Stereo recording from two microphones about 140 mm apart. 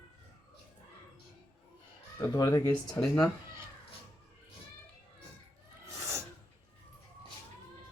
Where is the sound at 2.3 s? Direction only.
25° left (ahead or behind).